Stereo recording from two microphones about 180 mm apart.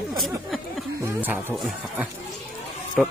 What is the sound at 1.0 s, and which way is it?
A man's voice, 10° right (ahead or behind).